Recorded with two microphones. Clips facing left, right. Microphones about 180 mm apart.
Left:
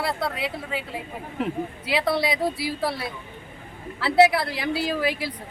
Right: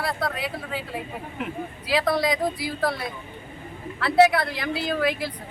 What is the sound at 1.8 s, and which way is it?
A woman's voice, 5° left (ahead or behind).